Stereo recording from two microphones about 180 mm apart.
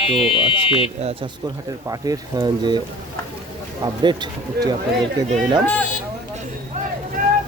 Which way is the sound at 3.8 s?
25° right (ahead or behind).